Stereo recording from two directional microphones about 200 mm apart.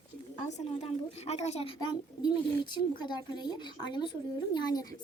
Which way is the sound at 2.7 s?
25° left (ahead or behind).